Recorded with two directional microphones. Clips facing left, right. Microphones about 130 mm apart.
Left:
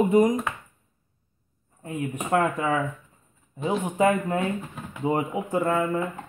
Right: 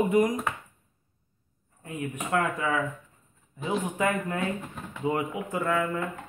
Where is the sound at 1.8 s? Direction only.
30° left (ahead or behind).